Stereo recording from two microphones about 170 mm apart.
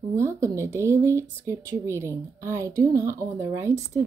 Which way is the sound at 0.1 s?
15° right (ahead or behind).